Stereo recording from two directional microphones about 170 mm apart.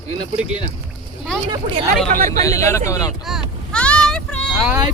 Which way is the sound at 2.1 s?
45° right (ahead or behind).